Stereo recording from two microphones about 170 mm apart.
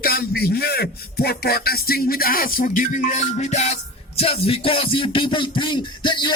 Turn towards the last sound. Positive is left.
turn(degrees=25)  # may be behind; listen again after turning